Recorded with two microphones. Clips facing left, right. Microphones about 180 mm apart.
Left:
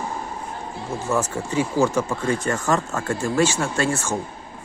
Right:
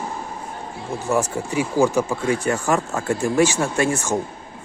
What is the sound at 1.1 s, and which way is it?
Speech, 10° right (ahead or behind).